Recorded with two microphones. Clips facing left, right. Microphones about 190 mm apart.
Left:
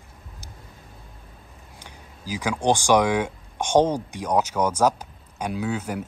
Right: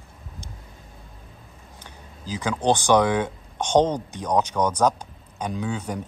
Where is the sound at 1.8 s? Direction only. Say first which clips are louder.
Left 1 dB; 10° left (ahead or behind).